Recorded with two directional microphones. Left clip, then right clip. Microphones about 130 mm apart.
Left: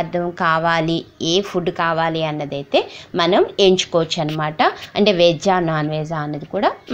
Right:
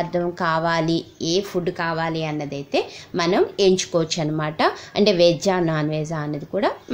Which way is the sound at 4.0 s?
5° left (ahead or behind).